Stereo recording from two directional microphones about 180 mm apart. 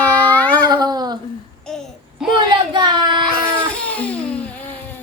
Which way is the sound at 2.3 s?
25° right (ahead or behind).